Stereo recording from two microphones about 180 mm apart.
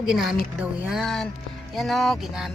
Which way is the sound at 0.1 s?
Centre (ahead or behind).